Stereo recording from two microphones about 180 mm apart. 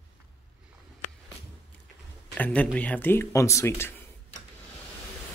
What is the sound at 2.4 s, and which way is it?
Speech, 5° left (ahead or behind).